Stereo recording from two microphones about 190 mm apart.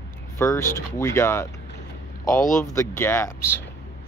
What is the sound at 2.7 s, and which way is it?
Speech, 15° left (ahead or behind).